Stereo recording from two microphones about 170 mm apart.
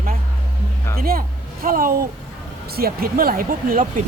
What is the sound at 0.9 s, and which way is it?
Speech, 60° right (ahead or behind).